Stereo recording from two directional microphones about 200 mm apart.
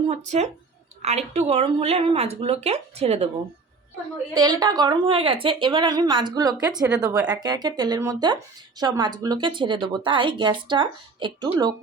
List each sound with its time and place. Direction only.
0.3 s speech: 35° right (ahead or behind)
4.4 s a woman's voice: 20° right (ahead or behind)